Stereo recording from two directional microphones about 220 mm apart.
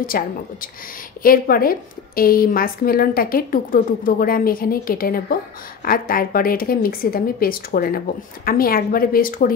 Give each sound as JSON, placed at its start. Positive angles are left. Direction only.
{"t": 0.0, "sound": "a woman's voice", "side_deg": 40}